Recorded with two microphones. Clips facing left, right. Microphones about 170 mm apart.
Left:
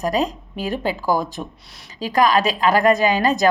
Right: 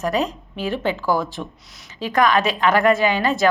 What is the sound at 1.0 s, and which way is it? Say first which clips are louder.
Speech: even; 15° left (ahead or behind).